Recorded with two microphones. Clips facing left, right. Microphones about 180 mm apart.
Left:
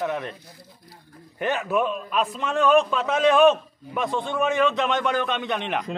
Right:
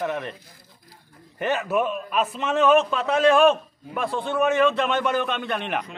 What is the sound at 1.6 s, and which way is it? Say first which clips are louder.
A man's voice: even; 5° right (ahead or behind).